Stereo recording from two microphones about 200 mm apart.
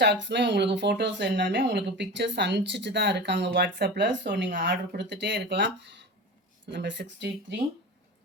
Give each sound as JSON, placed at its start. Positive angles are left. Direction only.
{"t": 0.0, "sound": "speech", "side_deg": -60}